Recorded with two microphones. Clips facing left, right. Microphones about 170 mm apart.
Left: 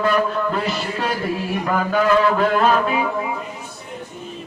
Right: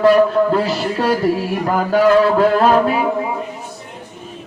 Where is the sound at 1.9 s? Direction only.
35° right (ahead or behind).